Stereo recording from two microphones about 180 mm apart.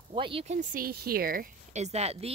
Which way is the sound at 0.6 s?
55° right (ahead or behind).